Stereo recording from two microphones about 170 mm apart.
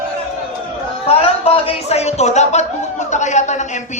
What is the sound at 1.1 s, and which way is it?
Speech, 35° left (ahead or behind).